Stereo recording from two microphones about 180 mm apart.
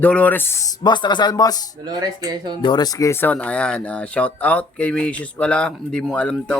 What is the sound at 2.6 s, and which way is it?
Speech, 25° left (ahead or behind).